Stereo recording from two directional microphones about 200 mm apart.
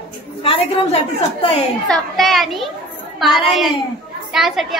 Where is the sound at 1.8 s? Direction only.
Centre (ahead or behind).